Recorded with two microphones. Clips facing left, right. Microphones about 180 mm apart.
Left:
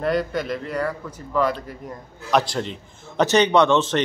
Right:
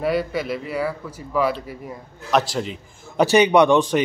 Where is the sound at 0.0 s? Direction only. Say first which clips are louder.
Even; 5° right (ahead or behind).